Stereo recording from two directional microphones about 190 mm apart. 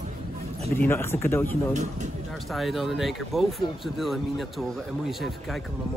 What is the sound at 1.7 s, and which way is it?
Speech, 40° right (ahead or behind).